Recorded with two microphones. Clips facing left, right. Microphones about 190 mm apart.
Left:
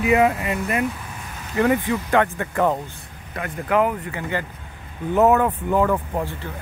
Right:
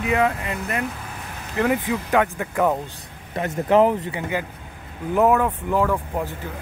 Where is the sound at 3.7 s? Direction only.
30° right (ahead or behind).